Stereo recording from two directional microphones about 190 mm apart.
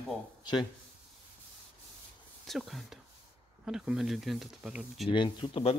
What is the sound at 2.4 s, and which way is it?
Speech, centre (ahead or behind).